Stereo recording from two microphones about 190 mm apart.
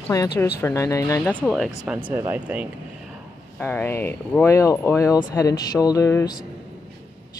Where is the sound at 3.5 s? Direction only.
10° left (ahead or behind).